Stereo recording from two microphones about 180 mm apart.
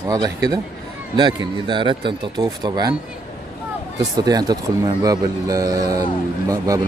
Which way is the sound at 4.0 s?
20° right (ahead or behind).